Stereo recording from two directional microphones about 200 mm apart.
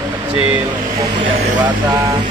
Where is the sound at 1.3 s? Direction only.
25° right (ahead or behind).